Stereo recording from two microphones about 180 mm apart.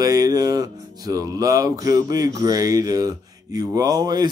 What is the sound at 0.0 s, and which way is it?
Speech, 20° right (ahead or behind).